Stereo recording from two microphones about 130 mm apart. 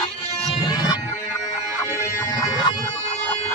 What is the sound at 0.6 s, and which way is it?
Music, 30° left (ahead or behind).